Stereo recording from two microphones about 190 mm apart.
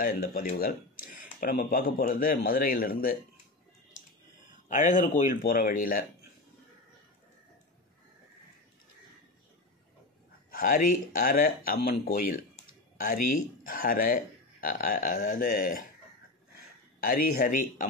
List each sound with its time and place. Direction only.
0.0 s speech: 50° left (ahead or behind)
4.6 s speech: 40° left (ahead or behind)
10.5 s speech: 45° left (ahead or behind)
17.0 s speech: 50° left (ahead or behind)